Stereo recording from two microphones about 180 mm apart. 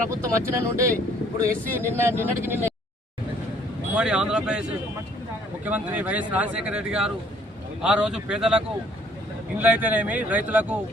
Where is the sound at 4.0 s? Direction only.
5° right (ahead or behind).